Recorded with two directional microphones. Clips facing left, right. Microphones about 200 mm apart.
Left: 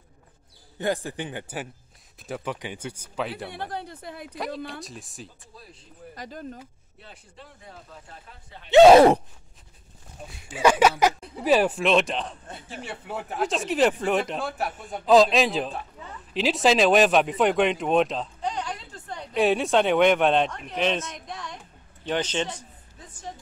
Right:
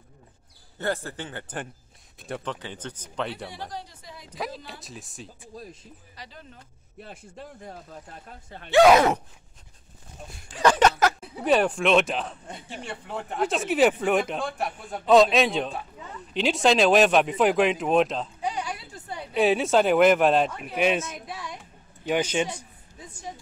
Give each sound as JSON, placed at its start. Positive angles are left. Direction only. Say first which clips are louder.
{"t": 0.7, "sound": "speech", "louder": "left 2 dB", "side_deg": 15}
{"t": 3.5, "sound": "a woman's voice", "louder": "left 4 dB", "side_deg": 60}
{"t": 4.6, "sound": "speech", "louder": "left 4 dB", "side_deg": 0}
{"t": 5.5, "sound": "speech", "louder": "right 8 dB", "side_deg": -45}
{"t": 6.1, "sound": "speech", "louder": "left 10 dB", "side_deg": 45}
{"t": 7.0, "sound": "speech", "louder": "right 6 dB", "side_deg": -45}
{"t": 8.6, "sound": "speech", "louder": "left 5 dB", "side_deg": 25}
{"t": 10.2, "sound": "speech", "louder": "left 1 dB", "side_deg": 0}
{"t": 11.1, "sound": "a man's voice", "louder": "left 1 dB", "side_deg": 0}